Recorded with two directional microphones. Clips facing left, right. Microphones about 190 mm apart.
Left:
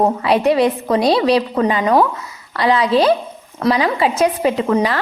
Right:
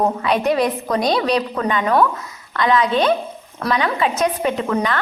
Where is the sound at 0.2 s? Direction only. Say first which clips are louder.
Left 4 dB; 30° left (ahead or behind).